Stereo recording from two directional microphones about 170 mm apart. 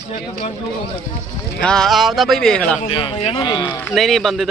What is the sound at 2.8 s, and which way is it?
Speech, 35° left (ahead or behind).